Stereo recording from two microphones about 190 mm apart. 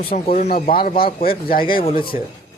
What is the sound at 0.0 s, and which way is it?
Speech, 30° left (ahead or behind).